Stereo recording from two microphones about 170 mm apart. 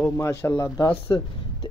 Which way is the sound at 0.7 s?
25° left (ahead or behind).